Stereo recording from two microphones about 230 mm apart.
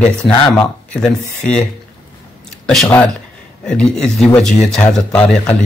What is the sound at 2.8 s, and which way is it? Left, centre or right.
Speech, centre.